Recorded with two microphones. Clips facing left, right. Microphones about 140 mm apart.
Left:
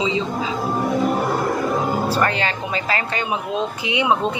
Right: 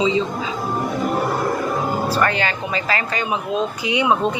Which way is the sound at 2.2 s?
30° left (ahead or behind).